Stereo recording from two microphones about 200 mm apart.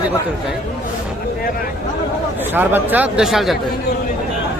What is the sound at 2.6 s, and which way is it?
A man's voice, 10° right (ahead or behind).